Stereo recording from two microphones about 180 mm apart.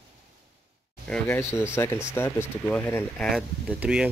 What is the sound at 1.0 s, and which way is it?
Speech, 10° left (ahead or behind).